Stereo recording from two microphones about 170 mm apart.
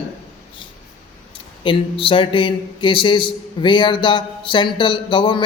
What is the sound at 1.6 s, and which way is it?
A man's voice, 30° left (ahead or behind).